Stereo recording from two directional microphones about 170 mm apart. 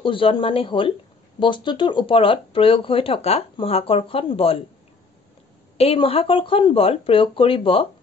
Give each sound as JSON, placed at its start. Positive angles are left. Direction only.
{"t": 0.0, "sound": "speech", "side_deg": 30}
{"t": 5.8, "sound": "speech", "side_deg": 35}